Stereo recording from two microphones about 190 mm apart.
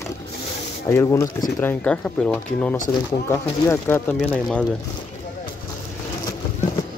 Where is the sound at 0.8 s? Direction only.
15° left (ahead or behind).